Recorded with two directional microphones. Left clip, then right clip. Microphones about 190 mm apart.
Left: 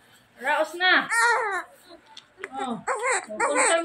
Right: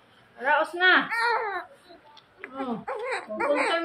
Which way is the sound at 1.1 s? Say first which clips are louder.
Left 4 dB; 30° left (ahead or behind).